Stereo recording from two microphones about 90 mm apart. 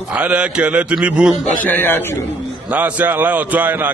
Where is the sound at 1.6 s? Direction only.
20° left (ahead or behind).